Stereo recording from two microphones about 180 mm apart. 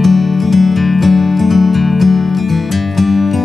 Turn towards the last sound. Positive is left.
turn(degrees=0)  # may be behind; listen again after turning